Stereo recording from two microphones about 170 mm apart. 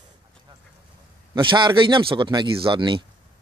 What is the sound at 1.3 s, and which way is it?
Speech, 30° right (ahead or behind).